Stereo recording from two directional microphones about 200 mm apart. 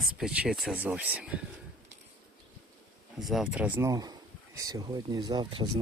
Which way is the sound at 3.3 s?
5° right (ahead or behind).